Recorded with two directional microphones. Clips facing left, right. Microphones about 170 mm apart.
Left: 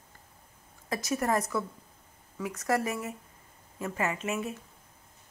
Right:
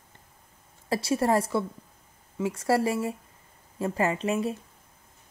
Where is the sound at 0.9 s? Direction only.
30° right (ahead or behind).